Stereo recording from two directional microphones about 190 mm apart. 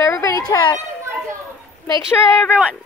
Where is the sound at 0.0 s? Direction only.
15° left (ahead or behind).